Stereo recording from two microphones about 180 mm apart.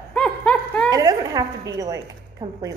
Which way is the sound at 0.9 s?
20° right (ahead or behind).